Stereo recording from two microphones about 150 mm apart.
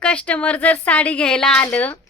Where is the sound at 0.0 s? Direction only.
10° left (ahead or behind).